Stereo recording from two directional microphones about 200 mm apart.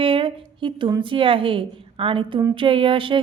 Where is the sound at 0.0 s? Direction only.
25° right (ahead or behind).